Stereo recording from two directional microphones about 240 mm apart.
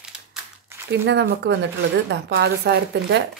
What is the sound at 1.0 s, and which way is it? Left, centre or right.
Speech, right.